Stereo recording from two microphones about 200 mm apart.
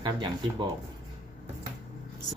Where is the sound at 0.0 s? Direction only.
20° right (ahead or behind).